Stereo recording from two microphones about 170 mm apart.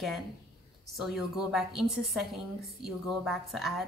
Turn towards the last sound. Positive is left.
turn(degrees=0)  # may be behind; listen again after turning